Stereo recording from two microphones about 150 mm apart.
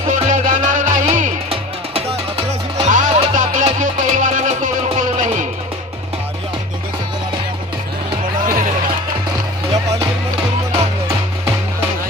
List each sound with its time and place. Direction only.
0.1 s music: 55° right (ahead or behind)
1.5 s music: 40° right (ahead or behind)
2.8 s music: 55° right (ahead or behind)
8.4 s music: 65° right (ahead or behind)